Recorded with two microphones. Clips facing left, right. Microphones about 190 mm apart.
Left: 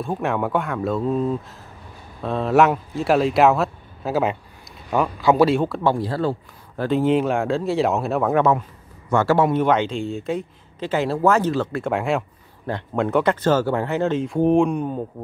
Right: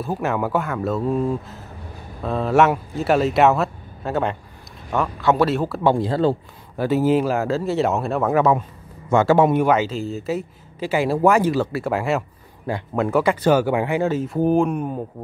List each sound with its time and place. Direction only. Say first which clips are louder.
0.0 s speech: even; 5° right (ahead or behind)
5.9 s speech: right 6 dB; 20° right (ahead or behind)
6.8 s speech: right 1 dB; 5° right (ahead or behind)
9.1 s speech: right 2 dB; 20° right (ahead or behind)